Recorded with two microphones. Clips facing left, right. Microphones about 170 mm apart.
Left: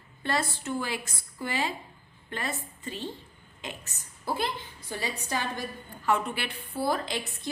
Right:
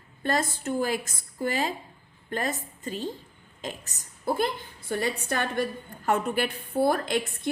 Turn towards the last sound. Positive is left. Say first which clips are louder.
# right 6 dB
turn(degrees=-55)  # may be behind; listen again after turning